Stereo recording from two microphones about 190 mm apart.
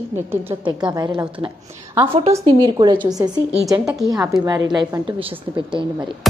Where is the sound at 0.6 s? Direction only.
25° right (ahead or behind).